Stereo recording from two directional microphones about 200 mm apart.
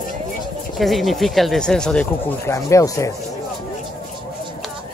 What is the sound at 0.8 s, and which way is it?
Speech, centre (ahead or behind).